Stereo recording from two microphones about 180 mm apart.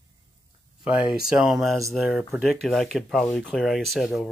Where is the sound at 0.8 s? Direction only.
5° right (ahead or behind).